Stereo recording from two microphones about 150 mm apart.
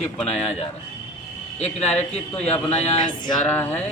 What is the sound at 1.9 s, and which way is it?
Speech, 10° left (ahead or behind).